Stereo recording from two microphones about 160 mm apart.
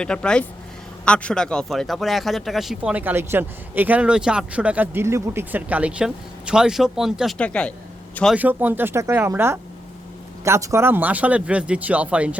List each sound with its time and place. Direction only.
0.0 s speech: 5° left (ahead or behind)
8.4 s speech: 10° right (ahead or behind)